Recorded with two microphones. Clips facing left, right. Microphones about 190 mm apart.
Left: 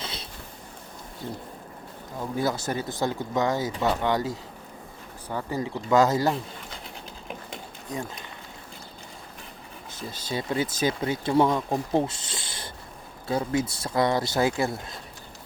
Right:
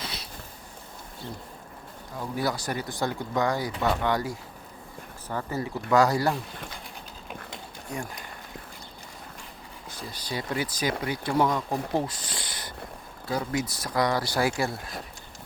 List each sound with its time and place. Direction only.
0.0 s a sound: 25° left (ahead or behind)
2.2 s speech: 20° left (ahead or behind)
9.9 s speech: 25° left (ahead or behind)